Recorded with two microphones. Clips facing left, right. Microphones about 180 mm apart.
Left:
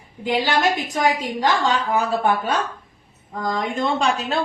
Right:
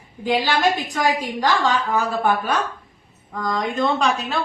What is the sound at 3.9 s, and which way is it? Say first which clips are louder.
Speech: even; 30° left (ahead or behind).